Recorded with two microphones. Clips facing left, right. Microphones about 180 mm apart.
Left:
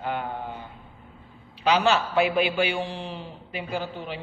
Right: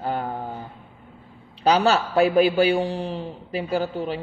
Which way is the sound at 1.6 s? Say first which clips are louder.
Right 3 dB; 40° right (ahead or behind).